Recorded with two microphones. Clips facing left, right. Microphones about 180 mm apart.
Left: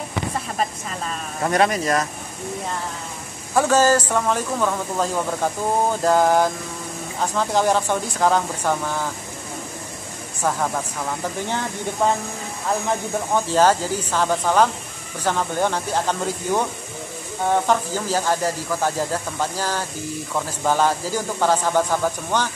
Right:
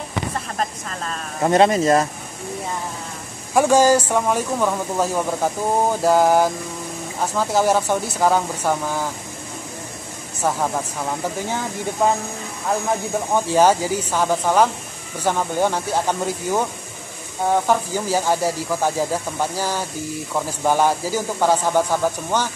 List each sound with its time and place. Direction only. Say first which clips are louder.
0.6 s speech: left 1 dB; 5° left (ahead or behind)
1.4 s speech: right 4 dB; 25° right (ahead or behind)
3.5 s speech: right 2 dB; 15° right (ahead or behind)
10.4 s speech: right 1 dB; 10° right (ahead or behind)
13.3 s speech: right 1 dB; 10° right (ahead or behind)